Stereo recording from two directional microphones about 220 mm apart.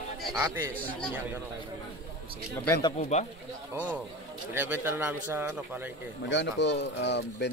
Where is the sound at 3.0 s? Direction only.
30° left (ahead or behind).